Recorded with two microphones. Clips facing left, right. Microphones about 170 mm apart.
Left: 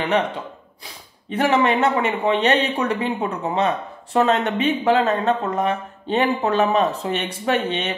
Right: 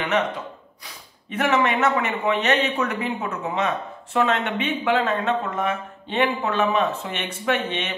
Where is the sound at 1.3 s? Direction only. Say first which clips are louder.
Left 3 dB; 30° left (ahead or behind).